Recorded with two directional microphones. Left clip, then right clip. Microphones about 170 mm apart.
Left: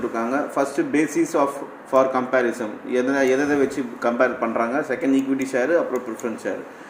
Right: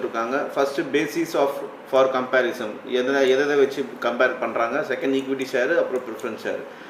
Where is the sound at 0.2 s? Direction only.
45° left (ahead or behind).